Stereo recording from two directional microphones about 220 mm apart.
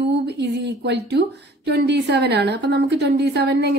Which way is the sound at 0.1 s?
50° right (ahead or behind).